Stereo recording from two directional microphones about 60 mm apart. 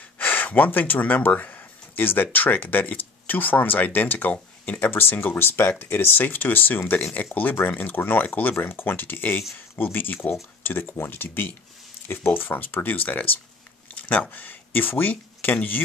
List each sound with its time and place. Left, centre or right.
0.2 s speech: left
8.5 s speech: left